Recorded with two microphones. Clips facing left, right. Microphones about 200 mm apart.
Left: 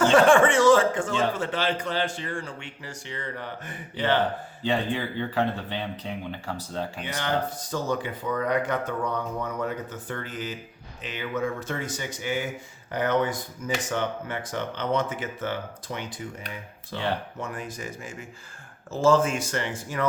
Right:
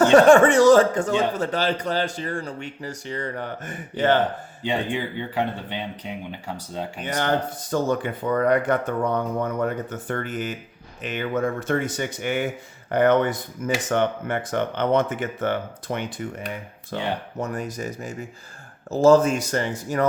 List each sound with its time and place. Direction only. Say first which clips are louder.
0.0 s a man's voice: right 5 dB; 40° right (ahead or behind)
4.6 s speech: right 1 dB; 15° right (ahead or behind)
7.0 s speech: right 6 dB; 50° right (ahead or behind)
17.4 s a man's voice: right 6 dB; 40° right (ahead or behind)